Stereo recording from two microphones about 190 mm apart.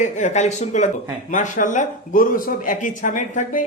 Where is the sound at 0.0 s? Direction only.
40° left (ahead or behind).